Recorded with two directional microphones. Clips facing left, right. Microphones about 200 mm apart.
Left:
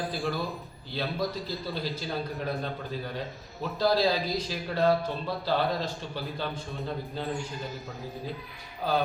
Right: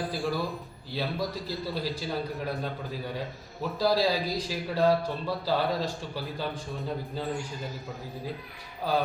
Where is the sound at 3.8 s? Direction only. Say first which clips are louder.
Even; 10° right (ahead or behind).